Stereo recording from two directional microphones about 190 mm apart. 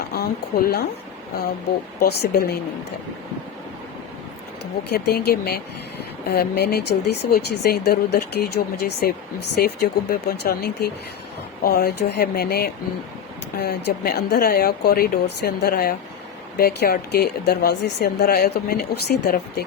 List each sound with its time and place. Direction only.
0.1 s speech: 50° left (ahead or behind)
2.0 s speech: 60° left (ahead or behind)
4.8 s speech: 55° left (ahead or behind)